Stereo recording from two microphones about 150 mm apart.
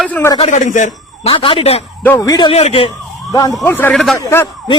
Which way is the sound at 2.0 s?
20° left (ahead or behind).